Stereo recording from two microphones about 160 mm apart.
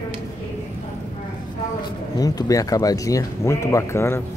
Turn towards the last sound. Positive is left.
turn(degrees=15)  # may be behind; listen again after turning